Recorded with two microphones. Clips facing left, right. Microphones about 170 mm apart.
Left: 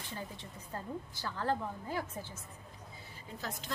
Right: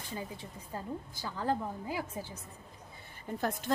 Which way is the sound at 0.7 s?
10° right (ahead or behind).